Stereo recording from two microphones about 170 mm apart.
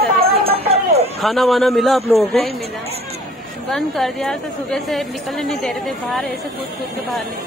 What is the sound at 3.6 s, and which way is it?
A woman's voice, centre (ahead or behind).